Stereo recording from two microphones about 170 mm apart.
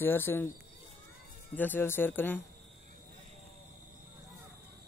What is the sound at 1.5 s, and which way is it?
Speech, 10° left (ahead or behind).